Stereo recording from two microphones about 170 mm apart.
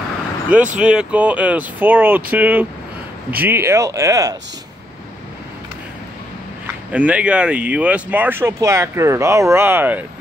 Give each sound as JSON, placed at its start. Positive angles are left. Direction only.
{"t": 0.7, "sound": "speech", "side_deg": -5}
{"t": 6.9, "sound": "speech", "side_deg": -10}